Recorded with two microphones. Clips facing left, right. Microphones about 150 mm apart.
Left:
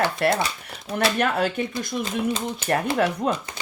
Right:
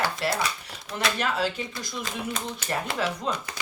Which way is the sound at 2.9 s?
55° left (ahead or behind).